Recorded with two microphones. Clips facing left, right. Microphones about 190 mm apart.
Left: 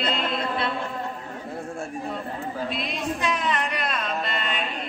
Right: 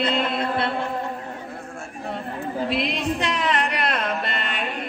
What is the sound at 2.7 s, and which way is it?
Music, 80° right.